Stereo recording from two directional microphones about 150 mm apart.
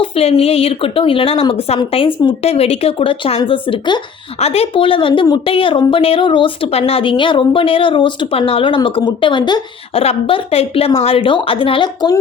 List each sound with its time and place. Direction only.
0.0 s speech: 40° left (ahead or behind)
4.4 s speech: 45° left (ahead or behind); by 12.2 s 25° left (ahead or behind)